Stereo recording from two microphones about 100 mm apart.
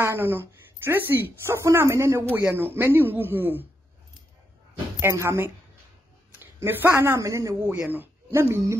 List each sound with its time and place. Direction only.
0.0 s a woman's voice: 25° right (ahead or behind)
5.0 s a woman's voice: 25° right (ahead or behind)